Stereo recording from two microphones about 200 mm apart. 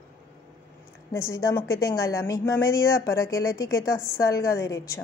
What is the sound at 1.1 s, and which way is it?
Speech, 15° left (ahead or behind).